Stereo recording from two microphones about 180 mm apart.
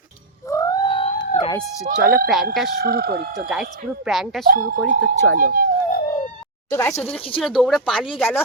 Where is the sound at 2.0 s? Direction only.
50° right (ahead or behind).